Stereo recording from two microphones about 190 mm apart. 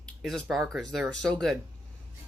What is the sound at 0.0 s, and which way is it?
Speech, centre (ahead or behind).